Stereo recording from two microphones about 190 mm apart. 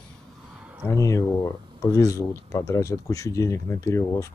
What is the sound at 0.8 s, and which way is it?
Speech, 15° left (ahead or behind).